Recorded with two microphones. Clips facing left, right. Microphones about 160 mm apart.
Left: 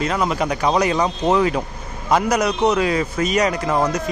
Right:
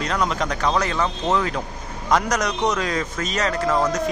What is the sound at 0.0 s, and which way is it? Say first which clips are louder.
A man's voice: left 3 dB; 5° left (ahead or behind).